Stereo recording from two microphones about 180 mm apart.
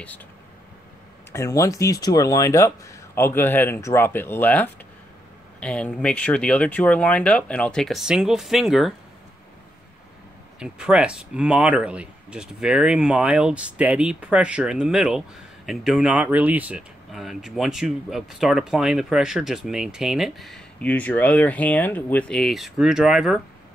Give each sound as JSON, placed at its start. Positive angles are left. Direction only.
{"t": 1.3, "sound": "speech", "side_deg": 15}
{"t": 10.6, "sound": "speech", "side_deg": -5}